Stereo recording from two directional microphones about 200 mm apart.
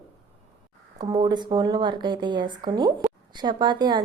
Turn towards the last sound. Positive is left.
turn(degrees=-20)  # may be behind; listen again after turning